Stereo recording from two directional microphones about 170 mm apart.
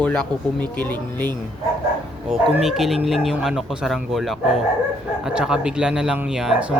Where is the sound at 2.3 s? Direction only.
Centre (ahead or behind).